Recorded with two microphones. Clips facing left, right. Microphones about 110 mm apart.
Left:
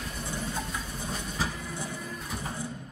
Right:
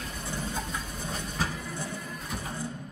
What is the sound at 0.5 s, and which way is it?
Train, 10° left (ahead or behind).